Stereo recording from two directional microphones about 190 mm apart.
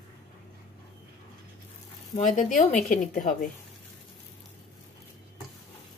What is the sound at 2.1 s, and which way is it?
A woman's voice, 40° left (ahead or behind).